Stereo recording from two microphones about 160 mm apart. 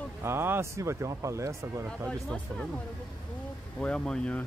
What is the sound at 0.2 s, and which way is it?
Speech, 15° right (ahead or behind).